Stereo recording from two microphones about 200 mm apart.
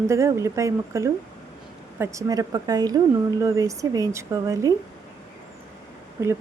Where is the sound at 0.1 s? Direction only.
15° right (ahead or behind).